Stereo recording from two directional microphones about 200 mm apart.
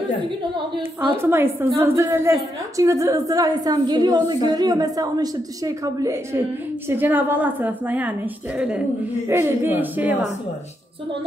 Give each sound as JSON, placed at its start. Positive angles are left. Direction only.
{"t": 1.1, "sound": "a woman's voice", "side_deg": -10}
{"t": 6.9, "sound": "a woman's voice", "side_deg": -10}